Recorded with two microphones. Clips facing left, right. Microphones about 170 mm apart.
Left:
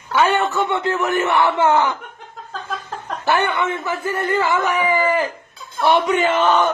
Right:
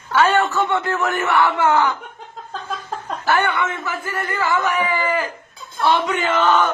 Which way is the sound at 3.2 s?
15° left (ahead or behind).